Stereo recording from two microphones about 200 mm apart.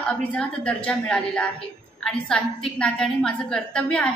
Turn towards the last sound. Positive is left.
turn(degrees=5)  # may be behind; listen again after turning